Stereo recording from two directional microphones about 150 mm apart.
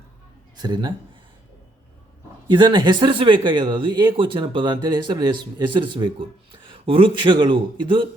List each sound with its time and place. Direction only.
0.5 s speech: 30° right (ahead or behind)
2.5 s speech: 30° right (ahead or behind)